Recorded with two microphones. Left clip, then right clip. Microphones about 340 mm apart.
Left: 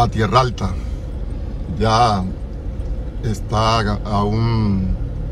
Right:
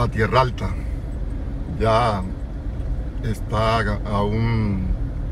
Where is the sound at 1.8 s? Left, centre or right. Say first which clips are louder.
Left 4 dB; centre.